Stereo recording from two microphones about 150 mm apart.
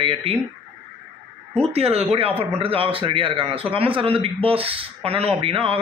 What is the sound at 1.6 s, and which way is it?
A man's voice, 40° right (ahead or behind).